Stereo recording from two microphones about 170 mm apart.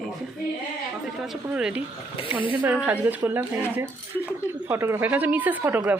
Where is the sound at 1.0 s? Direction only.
5° right (ahead or behind).